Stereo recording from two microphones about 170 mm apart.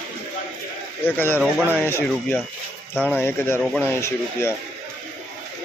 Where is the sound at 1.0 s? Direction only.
10° left (ahead or behind).